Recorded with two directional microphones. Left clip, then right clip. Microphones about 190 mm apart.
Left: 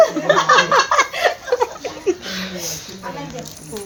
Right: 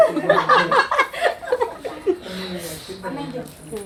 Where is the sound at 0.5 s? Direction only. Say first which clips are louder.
Left 4 dB; 10° left (ahead or behind).